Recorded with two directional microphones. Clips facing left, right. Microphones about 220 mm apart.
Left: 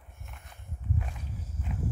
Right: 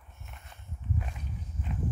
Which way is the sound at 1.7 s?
10° left (ahead or behind).